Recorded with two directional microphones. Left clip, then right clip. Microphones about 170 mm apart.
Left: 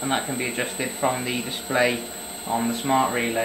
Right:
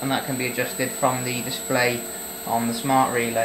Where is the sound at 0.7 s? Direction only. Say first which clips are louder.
Right 2 dB; 45° right (ahead or behind).